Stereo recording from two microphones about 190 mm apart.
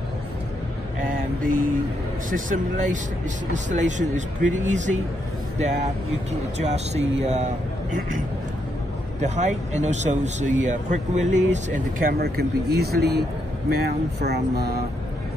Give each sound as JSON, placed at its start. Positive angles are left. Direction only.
{"t": 1.4, "sound": "speech", "side_deg": -45}
{"t": 6.6, "sound": "speech", "side_deg": -35}
{"t": 9.2, "sound": "speech", "side_deg": -40}